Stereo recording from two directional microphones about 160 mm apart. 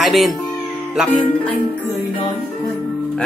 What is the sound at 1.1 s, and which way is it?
Music, 10° left (ahead or behind).